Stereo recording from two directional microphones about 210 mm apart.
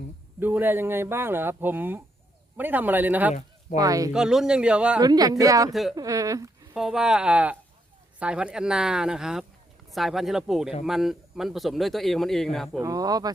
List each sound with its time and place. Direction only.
0.3 s speech: 10° right (ahead or behind)
4.1 s speech: 5° right (ahead or behind)
4.9 s speech: 20° right (ahead or behind)
6.7 s speech: centre (ahead or behind)
12.8 s speech: 15° right (ahead or behind)